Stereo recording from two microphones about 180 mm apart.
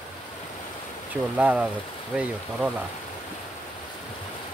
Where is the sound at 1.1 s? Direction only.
5° right (ahead or behind).